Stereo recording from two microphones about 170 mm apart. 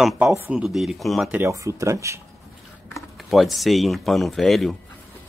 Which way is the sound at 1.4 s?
15° right (ahead or behind).